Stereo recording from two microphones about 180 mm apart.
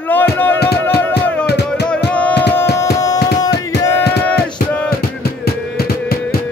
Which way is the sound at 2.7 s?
15° left (ahead or behind).